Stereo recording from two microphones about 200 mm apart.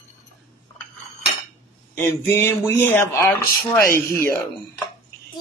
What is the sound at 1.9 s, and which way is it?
A man's voice, 10° left (ahead or behind).